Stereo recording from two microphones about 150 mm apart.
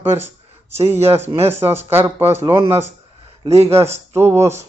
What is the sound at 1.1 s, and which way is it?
Speech, 15° right (ahead or behind).